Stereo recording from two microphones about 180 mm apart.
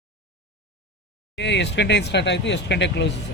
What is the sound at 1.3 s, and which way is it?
Speech, 75° left (ahead or behind).